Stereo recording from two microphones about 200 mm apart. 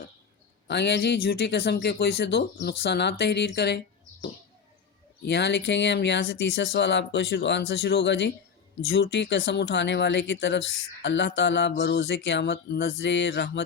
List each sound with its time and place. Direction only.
0.7 s speech: 55° left (ahead or behind)